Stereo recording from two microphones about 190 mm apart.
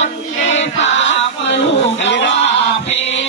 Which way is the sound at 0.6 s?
75° left (ahead or behind).